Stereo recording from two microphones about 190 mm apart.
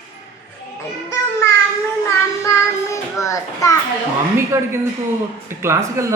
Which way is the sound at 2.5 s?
15° left (ahead or behind).